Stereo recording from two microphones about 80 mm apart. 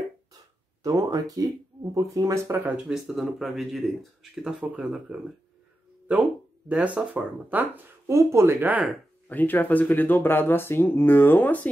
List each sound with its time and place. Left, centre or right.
0.8 s speech: right
2.9 s speech: centre
6.7 s speech: centre
8.1 s speech: right
9.3 s speech: left